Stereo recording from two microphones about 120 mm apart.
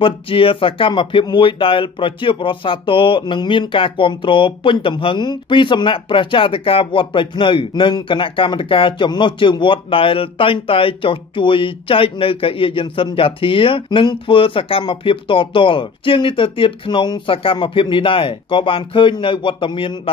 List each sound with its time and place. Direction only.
0.0 s speech: 50° left (ahead or behind)